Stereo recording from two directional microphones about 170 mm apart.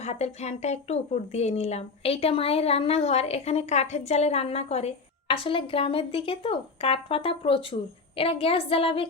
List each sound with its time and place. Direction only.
0.0 s speech: 40° left (ahead or behind)